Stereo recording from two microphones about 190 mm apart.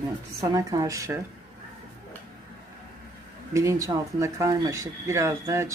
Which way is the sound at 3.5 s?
15° right (ahead or behind).